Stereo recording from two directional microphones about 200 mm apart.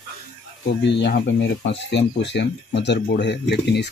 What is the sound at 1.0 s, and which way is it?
Speech, 60° left (ahead or behind).